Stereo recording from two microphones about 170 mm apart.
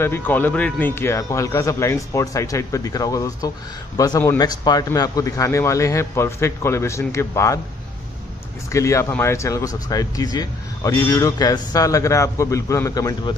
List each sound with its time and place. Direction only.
0.0 s a man's voice: 10° left (ahead or behind)
8.7 s speech: 15° left (ahead or behind)